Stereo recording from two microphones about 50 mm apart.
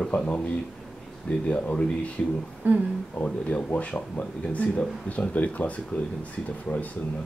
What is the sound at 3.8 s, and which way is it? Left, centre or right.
Speech, left.